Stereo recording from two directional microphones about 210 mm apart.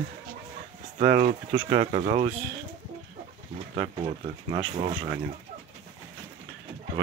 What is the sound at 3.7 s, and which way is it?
Speech, 25° right (ahead or behind).